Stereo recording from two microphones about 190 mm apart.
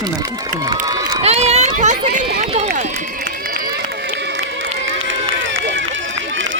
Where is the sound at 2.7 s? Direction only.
40° right (ahead or behind).